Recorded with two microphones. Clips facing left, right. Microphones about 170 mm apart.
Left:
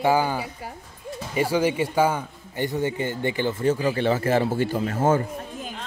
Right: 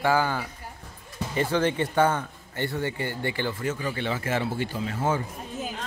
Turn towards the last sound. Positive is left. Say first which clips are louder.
# left 6 dB
turn(degrees=45)  # may be behind; listen again after turning